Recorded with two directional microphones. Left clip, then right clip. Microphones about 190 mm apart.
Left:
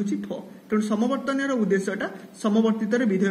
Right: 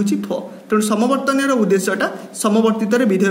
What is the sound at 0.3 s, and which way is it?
A man's voice, 30° right (ahead or behind).